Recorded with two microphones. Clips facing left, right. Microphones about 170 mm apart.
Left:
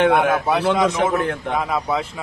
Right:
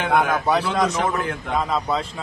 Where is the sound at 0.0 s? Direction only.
70° left (ahead or behind).